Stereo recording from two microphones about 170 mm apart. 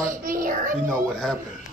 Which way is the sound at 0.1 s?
55° right (ahead or behind).